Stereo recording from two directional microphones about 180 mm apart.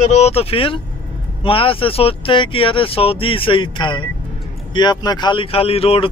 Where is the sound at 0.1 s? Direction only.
35° left (ahead or behind).